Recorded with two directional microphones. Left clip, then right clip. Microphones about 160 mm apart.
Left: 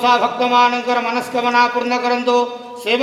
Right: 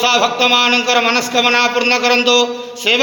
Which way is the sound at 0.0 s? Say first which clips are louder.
Right 2 dB; 15° right (ahead or behind).